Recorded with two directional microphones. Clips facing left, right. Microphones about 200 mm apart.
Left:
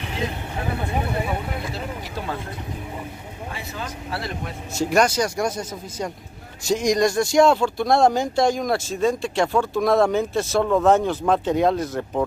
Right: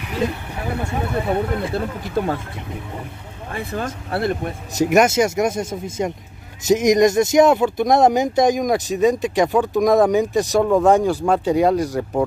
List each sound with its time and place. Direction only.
1.7 s speech: 50° right (ahead or behind)
3.5 s speech: 50° right (ahead or behind)
4.7 s speech: 20° right (ahead or behind)